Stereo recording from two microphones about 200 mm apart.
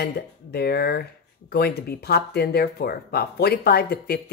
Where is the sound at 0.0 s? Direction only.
55° left (ahead or behind).